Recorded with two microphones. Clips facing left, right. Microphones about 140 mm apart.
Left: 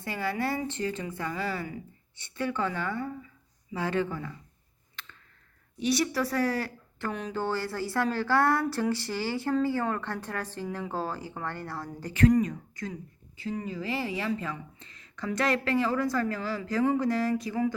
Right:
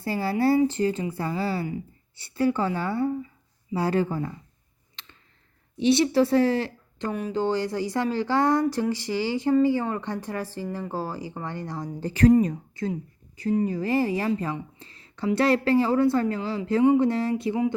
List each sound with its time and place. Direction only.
0.0 s a woman's voice: 35° right (ahead or behind)
5.7 s speech: 25° right (ahead or behind)
7.1 s speech: 5° right (ahead or behind)
12.0 s a woman's voice: 30° right (ahead or behind)
13.3 s a woman's voice: 40° right (ahead or behind)